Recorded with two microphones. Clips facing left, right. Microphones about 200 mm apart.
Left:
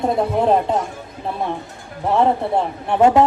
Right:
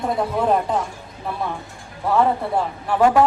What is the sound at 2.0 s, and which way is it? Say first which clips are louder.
A woman's voice: left 2 dB; 25° left (ahead or behind).